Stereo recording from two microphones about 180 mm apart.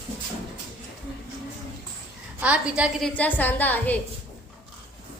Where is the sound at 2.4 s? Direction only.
5° right (ahead or behind).